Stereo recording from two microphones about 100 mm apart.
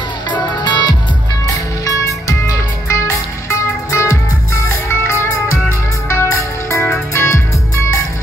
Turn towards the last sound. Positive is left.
turn(degrees=30)  # may be behind; listen again after turning